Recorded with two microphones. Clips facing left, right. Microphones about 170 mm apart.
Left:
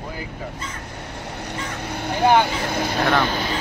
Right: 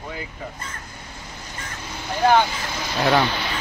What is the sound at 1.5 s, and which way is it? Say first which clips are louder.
Vehicle: left 5 dB; 65° left (ahead or behind).